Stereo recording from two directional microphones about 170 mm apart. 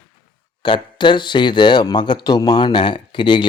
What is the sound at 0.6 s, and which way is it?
Speech, 30° left (ahead or behind).